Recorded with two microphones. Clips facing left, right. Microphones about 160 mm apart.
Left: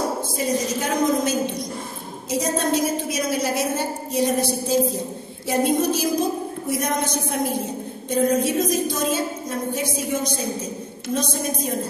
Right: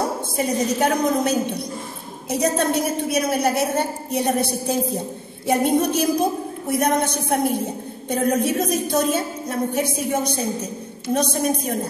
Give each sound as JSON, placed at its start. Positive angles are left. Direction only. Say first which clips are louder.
{"t": 0.4, "sound": "a woman's voice", "louder": "right 4 dB", "side_deg": -60}